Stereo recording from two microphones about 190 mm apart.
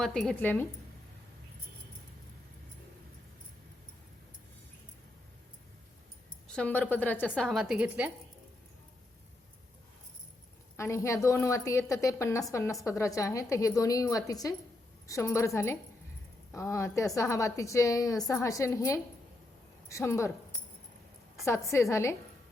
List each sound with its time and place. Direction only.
0.0 s a woman's voice: 5° left (ahead or behind)
6.5 s a woman's voice: 5° left (ahead or behind)
10.8 s a woman's voice: 15° left (ahead or behind)
21.4 s a woman's voice: 15° left (ahead or behind)